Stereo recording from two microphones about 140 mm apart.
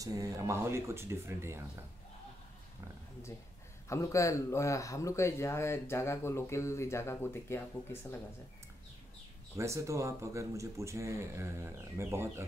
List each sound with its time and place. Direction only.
0.0 s speech: 25° right (ahead or behind)
3.9 s speech: 20° left (ahead or behind)
9.6 s speech: 20° right (ahead or behind)